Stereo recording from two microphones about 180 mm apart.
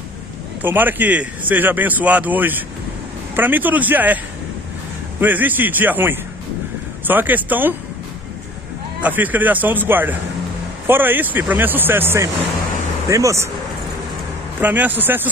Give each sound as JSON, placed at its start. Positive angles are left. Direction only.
{"t": 0.6, "sound": "speech", "side_deg": -10}
{"t": 5.2, "sound": "speech", "side_deg": -10}
{"t": 9.0, "sound": "speech", "side_deg": -10}
{"t": 14.6, "sound": "speech", "side_deg": -10}